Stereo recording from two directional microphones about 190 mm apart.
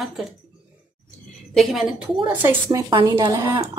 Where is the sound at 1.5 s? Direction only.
Centre (ahead or behind).